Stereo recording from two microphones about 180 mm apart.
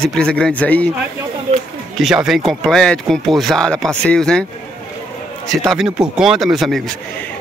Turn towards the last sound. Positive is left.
turn(degrees=0)  # may be behind; listen again after turning